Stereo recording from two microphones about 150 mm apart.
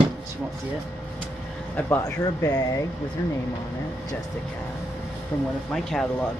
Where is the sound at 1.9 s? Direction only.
20° left (ahead or behind).